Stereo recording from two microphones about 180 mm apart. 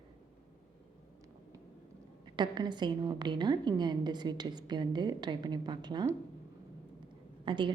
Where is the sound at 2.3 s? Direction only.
25° right (ahead or behind).